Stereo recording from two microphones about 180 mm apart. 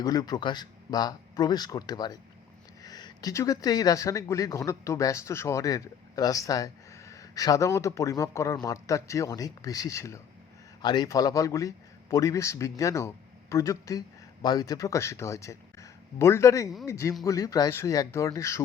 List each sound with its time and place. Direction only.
0.0 s speech: 20° left (ahead or behind)